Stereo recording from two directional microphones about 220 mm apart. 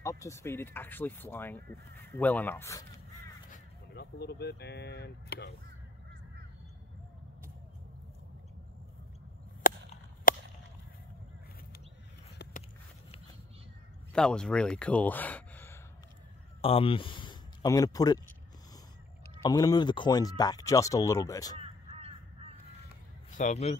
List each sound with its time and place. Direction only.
0.0 s speech: 15° left (ahead or behind)
3.5 s speech: 45° left (ahead or behind)
9.6 s a sound: 40° left (ahead or behind)
10.3 s whip: 40° left (ahead or behind)
14.1 s speech: 5° left (ahead or behind)
16.6 s speech: 25° left (ahead or behind)
19.3 s speech: 20° left (ahead or behind)
21.5 s crow: 25° right (ahead or behind)
23.3 s a man's voice: 30° left (ahead or behind)